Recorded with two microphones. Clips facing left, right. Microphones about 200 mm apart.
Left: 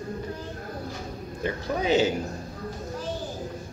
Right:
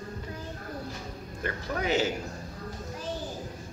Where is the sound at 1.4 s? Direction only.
20° left (ahead or behind).